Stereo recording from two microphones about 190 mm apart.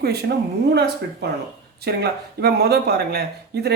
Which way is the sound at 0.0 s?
55° right (ahead or behind).